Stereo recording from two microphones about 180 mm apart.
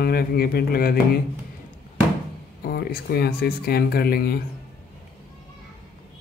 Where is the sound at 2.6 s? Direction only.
60° left (ahead or behind).